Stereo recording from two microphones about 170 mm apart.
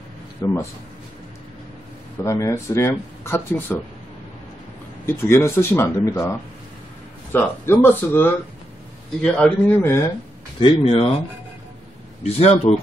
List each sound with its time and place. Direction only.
0.4 s a man's voice: 20° left (ahead or behind)
2.2 s speech: 20° left (ahead or behind)
5.0 s speech: 15° left (ahead or behind)
7.3 s a man's voice: 15° left (ahead or behind)
9.8 s speech: 15° left (ahead or behind)
10.6 s speech: 30° left (ahead or behind)
12.2 s speech: 40° left (ahead or behind)